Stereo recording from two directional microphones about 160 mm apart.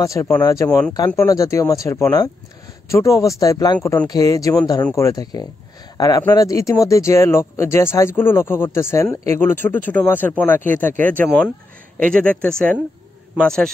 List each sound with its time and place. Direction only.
0.0 s speech: 20° left (ahead or behind)